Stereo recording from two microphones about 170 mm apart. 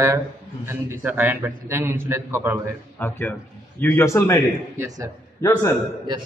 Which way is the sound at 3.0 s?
15° left (ahead or behind).